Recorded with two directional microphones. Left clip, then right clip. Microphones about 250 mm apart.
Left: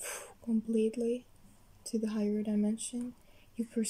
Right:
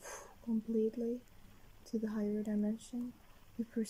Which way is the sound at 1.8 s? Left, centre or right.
Centre.